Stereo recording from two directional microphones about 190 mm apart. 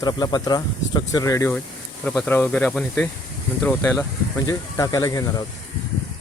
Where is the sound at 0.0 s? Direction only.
20° left (ahead or behind).